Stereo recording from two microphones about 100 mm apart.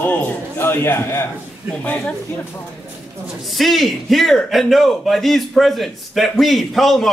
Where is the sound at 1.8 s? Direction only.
15° left (ahead or behind).